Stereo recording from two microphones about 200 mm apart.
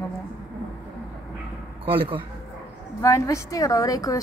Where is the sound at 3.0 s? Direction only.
15° left (ahead or behind).